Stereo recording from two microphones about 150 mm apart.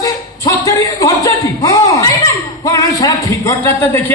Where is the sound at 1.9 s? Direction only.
20° left (ahead or behind).